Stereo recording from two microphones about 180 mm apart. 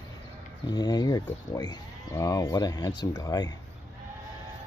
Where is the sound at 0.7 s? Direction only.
25° left (ahead or behind).